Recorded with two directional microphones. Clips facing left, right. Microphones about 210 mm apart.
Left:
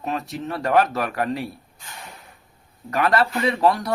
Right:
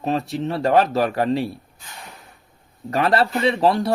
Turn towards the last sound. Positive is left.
turn(degrees=-30)  # may be behind; listen again after turning